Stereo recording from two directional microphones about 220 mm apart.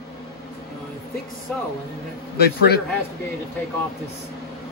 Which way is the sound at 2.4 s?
45° left (ahead or behind).